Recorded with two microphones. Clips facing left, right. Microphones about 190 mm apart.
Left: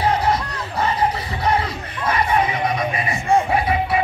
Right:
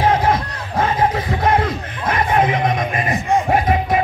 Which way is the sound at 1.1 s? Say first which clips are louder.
Right 4 dB; 50° right (ahead or behind).